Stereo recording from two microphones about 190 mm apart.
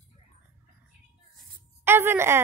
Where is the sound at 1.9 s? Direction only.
10° right (ahead or behind).